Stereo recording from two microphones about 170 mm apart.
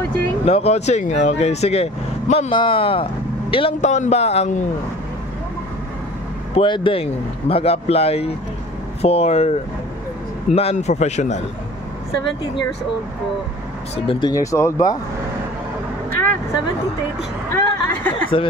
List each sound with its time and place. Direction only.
0.5 s speech: 40° left (ahead or behind)
6.5 s a man's voice: 30° left (ahead or behind)
13.9 s speech: 30° left (ahead or behind)
14.3 s speech: 20° left (ahead or behind)
17.5 s a sound: 10° left (ahead or behind)